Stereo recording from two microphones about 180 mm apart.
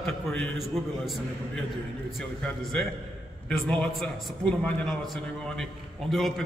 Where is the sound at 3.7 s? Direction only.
5° left (ahead or behind).